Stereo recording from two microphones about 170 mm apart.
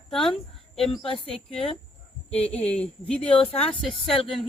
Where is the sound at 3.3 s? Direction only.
35° left (ahead or behind).